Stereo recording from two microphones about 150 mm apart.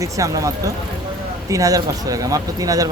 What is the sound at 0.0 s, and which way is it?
Speech, 20° right (ahead or behind).